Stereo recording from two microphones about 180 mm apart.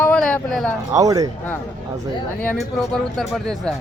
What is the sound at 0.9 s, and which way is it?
Speech, 20° right (ahead or behind).